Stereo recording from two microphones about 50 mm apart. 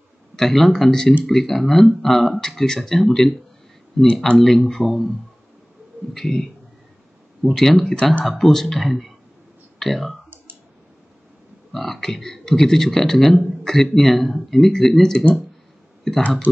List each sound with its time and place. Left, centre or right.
0.4 s speech: centre
6.1 s speech: centre
7.5 s speech: centre
7.9 s speech: left
8.3 s speech: centre
11.7 s speech: centre